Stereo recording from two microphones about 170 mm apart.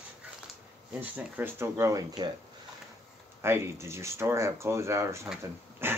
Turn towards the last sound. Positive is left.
turn(degrees=-15)  # may be behind; listen again after turning